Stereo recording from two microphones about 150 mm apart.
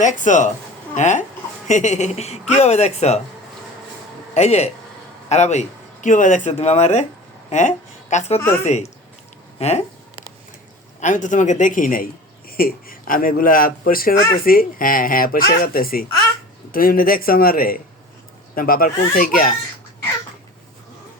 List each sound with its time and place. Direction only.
0.0 s speech: 55° left (ahead or behind)
4.4 s speech: 45° left (ahead or behind)
8.1 s speech: 55° left (ahead or behind)
11.0 s speech: 55° left (ahead or behind)
12.5 s speech: 80° left